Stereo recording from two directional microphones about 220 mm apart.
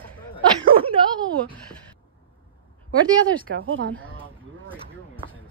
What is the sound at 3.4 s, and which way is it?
Speech, 65° right (ahead or behind).